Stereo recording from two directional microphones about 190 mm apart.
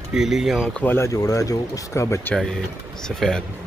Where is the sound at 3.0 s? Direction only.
5° left (ahead or behind).